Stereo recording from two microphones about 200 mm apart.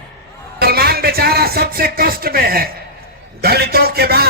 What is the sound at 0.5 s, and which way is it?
A man's voice, 50° right (ahead or behind).